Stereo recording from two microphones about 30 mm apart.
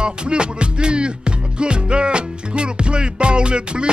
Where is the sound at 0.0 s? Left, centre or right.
Right.